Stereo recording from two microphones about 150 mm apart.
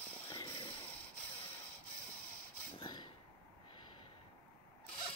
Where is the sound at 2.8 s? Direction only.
30° left (ahead or behind).